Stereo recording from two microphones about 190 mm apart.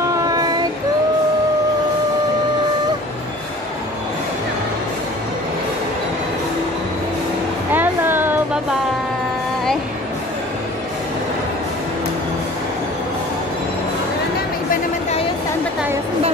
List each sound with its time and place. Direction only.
0.1 s child singing: 20° right (ahead or behind)
7.7 s music: 10° right (ahead or behind)
14.7 s a sound: 35° left (ahead or behind)